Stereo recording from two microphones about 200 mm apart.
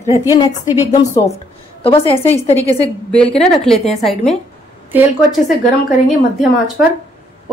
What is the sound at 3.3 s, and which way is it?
A woman's voice, 5° left (ahead or behind).